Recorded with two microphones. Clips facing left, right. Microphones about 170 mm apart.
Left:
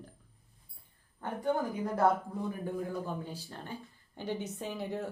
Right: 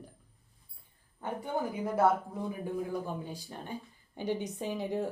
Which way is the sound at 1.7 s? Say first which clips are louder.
Right 2 dB; 5° right (ahead or behind).